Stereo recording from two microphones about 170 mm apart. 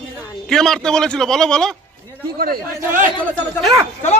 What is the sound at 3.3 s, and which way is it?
Speech, 10° left (ahead or behind).